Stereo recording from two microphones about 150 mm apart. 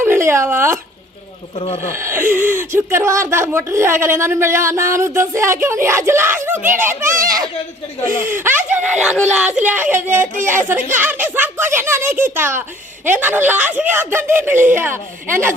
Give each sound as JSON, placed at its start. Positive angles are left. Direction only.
{"t": 0.0, "sound": "speech", "side_deg": -15}
{"t": 1.5, "sound": "speech", "side_deg": 40}
{"t": 1.9, "sound": "speech", "side_deg": -15}